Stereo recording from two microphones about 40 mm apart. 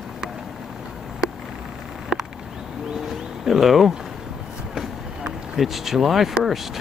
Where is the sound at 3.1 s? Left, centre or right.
Centre.